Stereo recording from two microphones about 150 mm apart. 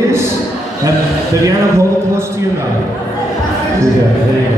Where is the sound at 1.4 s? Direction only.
20° right (ahead or behind).